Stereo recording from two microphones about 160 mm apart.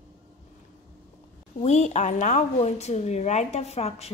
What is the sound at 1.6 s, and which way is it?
A woman's voice, 45° left (ahead or behind).